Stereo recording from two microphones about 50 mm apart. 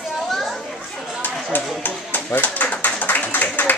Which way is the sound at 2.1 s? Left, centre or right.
Left.